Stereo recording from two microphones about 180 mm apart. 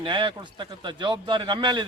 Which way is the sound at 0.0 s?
25° right (ahead or behind).